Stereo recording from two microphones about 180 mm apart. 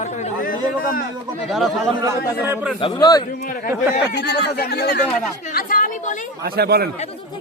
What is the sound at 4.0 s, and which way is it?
Speech, 70° left (ahead or behind).